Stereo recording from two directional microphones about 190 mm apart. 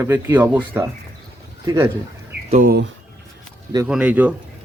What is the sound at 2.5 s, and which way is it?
Speech, 45° right (ahead or behind).